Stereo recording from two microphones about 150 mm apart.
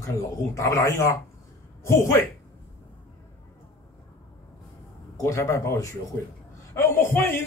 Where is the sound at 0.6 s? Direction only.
20° left (ahead or behind).